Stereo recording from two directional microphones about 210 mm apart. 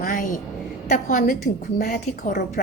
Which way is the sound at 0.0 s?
40° left (ahead or behind).